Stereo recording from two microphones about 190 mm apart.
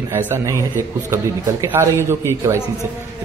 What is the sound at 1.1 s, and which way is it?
Speech, 15° right (ahead or behind).